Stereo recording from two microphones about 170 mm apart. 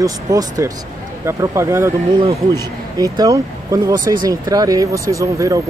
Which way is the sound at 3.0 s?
20° right (ahead or behind).